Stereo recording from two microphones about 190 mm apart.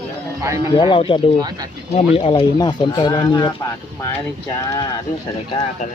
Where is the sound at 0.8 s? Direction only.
25° left (ahead or behind).